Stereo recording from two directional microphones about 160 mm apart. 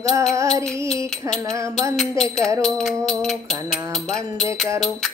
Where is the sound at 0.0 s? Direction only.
20° right (ahead or behind).